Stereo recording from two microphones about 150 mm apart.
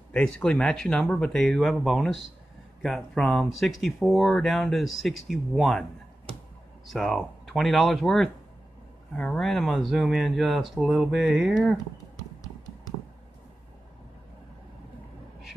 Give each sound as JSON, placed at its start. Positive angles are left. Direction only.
{"t": 0.1, "sound": "speech", "side_deg": 5}
{"t": 6.9, "sound": "speech", "side_deg": 0}
{"t": 12.2, "sound": "a sound", "side_deg": 25}